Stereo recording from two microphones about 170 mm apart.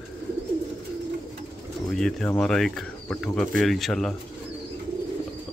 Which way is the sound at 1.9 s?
Centre (ahead or behind).